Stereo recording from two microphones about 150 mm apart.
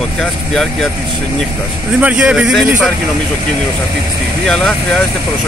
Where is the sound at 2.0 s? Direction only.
10° right (ahead or behind).